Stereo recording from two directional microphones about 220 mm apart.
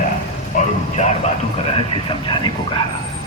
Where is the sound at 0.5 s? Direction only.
35° left (ahead or behind).